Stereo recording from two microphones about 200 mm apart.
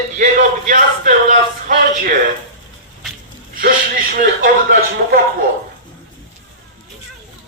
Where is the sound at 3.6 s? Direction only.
45° right (ahead or behind).